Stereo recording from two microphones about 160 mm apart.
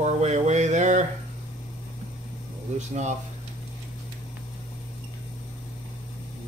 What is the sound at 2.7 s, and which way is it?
Speech, 45° right (ahead or behind).